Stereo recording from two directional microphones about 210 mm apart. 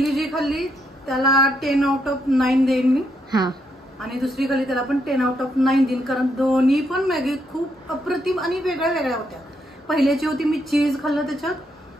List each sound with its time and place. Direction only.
0.0 s a woman's voice: centre (ahead or behind)
3.3 s speech: 20° right (ahead or behind)
4.0 s a woman's voice: centre (ahead or behind)